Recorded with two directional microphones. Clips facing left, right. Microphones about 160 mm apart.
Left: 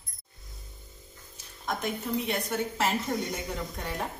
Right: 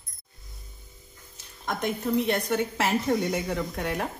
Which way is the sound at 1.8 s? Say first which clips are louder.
Right 7 dB; 75° right (ahead or behind).